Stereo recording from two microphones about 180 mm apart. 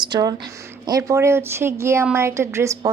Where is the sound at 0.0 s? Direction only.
20° right (ahead or behind).